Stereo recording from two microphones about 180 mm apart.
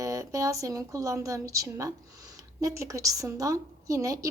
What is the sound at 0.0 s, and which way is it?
Speech, 15° right (ahead or behind).